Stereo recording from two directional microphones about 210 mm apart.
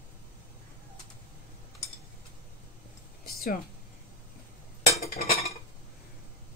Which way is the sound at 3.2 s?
45° left (ahead or behind).